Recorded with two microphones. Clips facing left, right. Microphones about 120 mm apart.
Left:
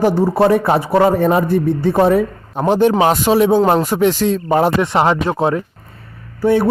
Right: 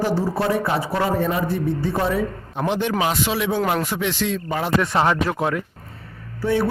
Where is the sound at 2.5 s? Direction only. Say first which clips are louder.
Left 9 dB; 40° left (ahead or behind).